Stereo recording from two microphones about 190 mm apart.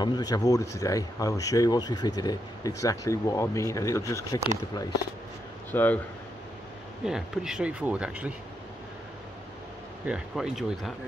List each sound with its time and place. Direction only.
0.0 s speech: 20° left (ahead or behind)
5.7 s speech: 10° left (ahead or behind)
7.1 s speech: 5° right (ahead or behind)
10.0 s speech: 5° right (ahead or behind)